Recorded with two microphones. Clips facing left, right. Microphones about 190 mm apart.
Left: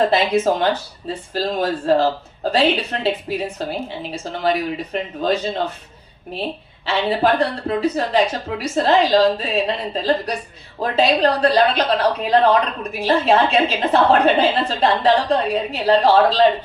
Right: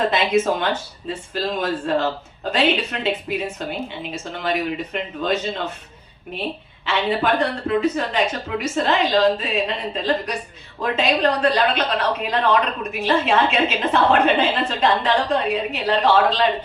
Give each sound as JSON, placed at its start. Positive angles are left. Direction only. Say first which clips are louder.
{"t": 0.0, "sound": "a woman's voice", "louder": "left 2 dB", "side_deg": 35}
{"t": 6.8, "sound": "a woman's voice", "louder": "left 3 dB", "side_deg": 35}